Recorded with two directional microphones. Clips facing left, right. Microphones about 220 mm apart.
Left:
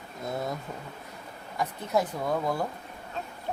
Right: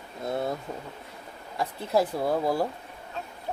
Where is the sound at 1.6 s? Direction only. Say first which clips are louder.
Right 2 dB; 30° right (ahead or behind).